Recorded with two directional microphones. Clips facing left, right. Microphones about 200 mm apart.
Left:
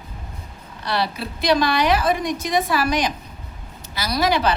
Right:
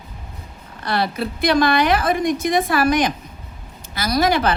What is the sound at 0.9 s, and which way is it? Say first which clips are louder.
A woman's voice: right 3 dB; 50° right (ahead or behind).